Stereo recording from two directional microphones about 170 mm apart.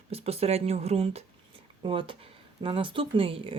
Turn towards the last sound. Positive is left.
turn(degrees=-30)  # may be behind; listen again after turning